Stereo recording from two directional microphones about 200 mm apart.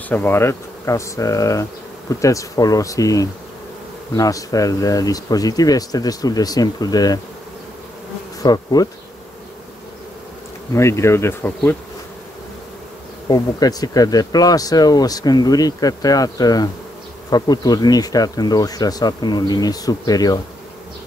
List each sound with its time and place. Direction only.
0.1 s insect: 10° left (ahead or behind)
4.1 s speech: 15° left (ahead or behind)
8.4 s bee: 20° left (ahead or behind)
10.7 s insect: 15° left (ahead or behind)
13.3 s speech: 20° left (ahead or behind)